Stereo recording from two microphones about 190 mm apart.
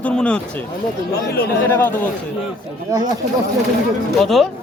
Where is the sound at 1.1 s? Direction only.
55° left (ahead or behind).